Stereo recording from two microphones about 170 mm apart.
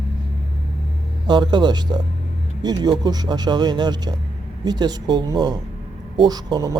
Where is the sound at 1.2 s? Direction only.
25° right (ahead or behind).